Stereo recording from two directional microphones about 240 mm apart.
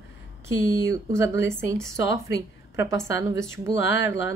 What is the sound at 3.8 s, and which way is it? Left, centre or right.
Speech, left.